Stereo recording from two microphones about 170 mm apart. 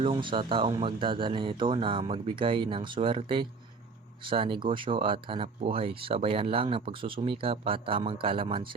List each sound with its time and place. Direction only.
0.0 s speech: 30° right (ahead or behind)